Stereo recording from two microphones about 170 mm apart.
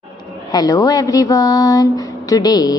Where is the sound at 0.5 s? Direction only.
20° left (ahead or behind).